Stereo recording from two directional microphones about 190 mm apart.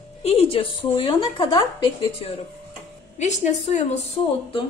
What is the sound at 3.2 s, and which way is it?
A woman's voice, 40° left (ahead or behind).